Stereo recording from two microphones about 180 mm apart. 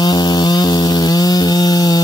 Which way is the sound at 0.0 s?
25° left (ahead or behind).